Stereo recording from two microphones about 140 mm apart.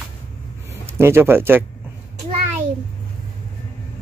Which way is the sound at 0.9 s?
15° right (ahead or behind).